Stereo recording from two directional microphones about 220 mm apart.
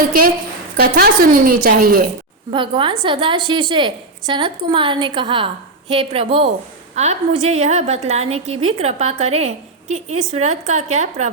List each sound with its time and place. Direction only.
0.8 s a woman's voice: 45° right (ahead or behind)
2.5 s a woman's voice: 20° right (ahead or behind)